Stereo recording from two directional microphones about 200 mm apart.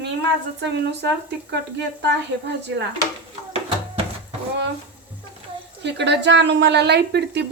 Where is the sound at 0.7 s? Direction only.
60° right (ahead or behind).